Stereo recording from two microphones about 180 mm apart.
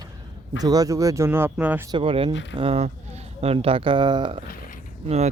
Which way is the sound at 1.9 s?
30° right (ahead or behind).